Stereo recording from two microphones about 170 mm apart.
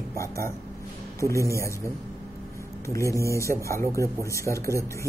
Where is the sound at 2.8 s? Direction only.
15° left (ahead or behind).